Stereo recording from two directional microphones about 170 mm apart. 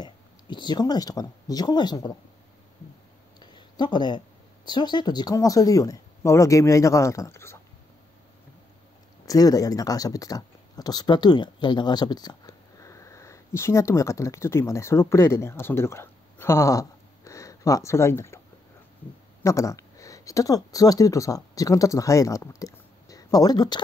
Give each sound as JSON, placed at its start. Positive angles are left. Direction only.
{"t": 0.0, "sound": "speech", "side_deg": 25}
{"t": 3.3, "sound": "a sound", "side_deg": 25}
{"t": 4.6, "sound": "speech", "side_deg": 25}
{"t": 9.2, "sound": "speech", "side_deg": 20}
{"t": 19.4, "sound": "speech", "side_deg": 20}